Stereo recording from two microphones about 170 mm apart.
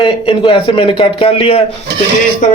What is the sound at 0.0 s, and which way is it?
Speech, 30° left (ahead or behind).